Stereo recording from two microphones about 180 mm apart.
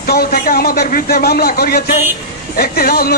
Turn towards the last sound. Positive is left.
turn(degrees=55)  # may be behind; listen again after turning